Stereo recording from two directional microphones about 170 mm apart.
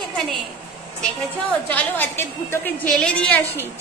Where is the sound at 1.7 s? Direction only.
10° left (ahead or behind).